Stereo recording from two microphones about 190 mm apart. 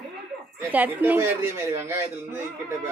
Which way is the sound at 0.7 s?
10° right (ahead or behind).